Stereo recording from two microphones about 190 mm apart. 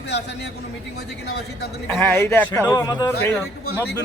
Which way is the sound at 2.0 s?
10° left (ahead or behind).